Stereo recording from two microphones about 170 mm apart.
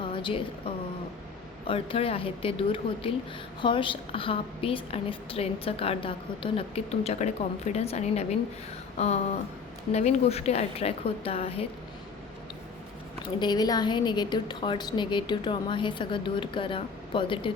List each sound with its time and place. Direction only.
0.0 s a sound: 30° left (ahead or behind)
1.6 s a woman's voice: 35° left (ahead or behind)
13.4 s a woman's voice: 25° left (ahead or behind)